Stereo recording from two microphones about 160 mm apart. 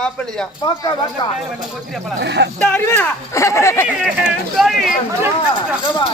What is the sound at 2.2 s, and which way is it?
Speech, 90° right.